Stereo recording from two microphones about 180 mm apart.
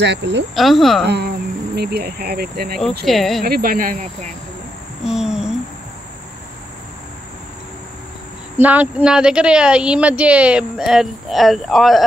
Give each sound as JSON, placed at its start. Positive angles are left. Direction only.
{"t": 0.0, "sound": "speech", "side_deg": -75}
{"t": 0.6, "sound": "speech", "side_deg": 0}
{"t": 1.0, "sound": "speech", "side_deg": -65}
{"t": 3.1, "sound": "speech", "side_deg": 0}
{"t": 3.4, "sound": "speech", "side_deg": -55}
{"t": 5.0, "sound": "a sound", "side_deg": -5}
{"t": 8.5, "sound": "speech", "side_deg": -10}